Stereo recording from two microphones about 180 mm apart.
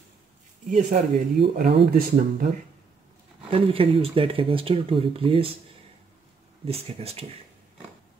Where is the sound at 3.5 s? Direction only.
30° right (ahead or behind).